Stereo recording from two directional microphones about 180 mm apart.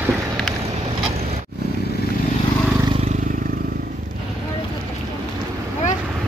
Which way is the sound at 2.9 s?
35° right (ahead or behind).